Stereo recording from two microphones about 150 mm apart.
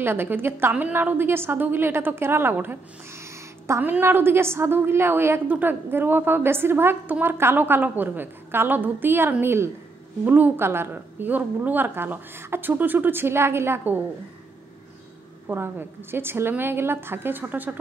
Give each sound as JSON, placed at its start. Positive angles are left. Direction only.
{"t": 0.0, "sound": "a woman's voice", "side_deg": -15}
{"t": 15.4, "sound": "a woman's voice", "side_deg": -15}